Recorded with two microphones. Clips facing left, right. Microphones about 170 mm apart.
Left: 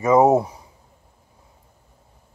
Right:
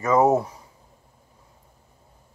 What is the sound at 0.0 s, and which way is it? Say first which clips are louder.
Speech: left 4 dB; 15° left (ahead or behind).